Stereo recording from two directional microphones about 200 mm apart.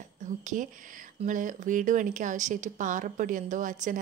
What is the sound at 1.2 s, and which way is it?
A woman's voice, 40° right (ahead or behind).